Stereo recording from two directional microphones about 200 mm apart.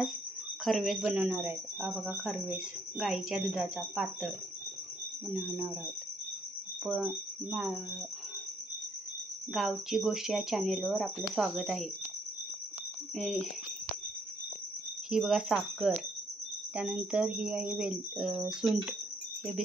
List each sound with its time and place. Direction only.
0.7 s speech: centre (ahead or behind)
6.8 s speech: 5° right (ahead or behind)
9.5 s speech: 5° right (ahead or behind)
13.1 s speech: 5° left (ahead or behind)
15.0 s speech: 5° right (ahead or behind)